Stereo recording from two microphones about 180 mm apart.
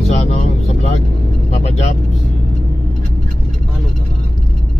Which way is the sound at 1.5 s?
35° left (ahead or behind).